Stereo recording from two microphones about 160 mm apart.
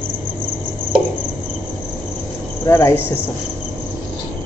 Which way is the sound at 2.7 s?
20° left (ahead or behind).